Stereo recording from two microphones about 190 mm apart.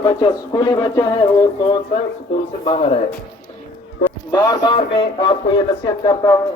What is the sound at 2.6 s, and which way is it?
Speech, 30° left (ahead or behind).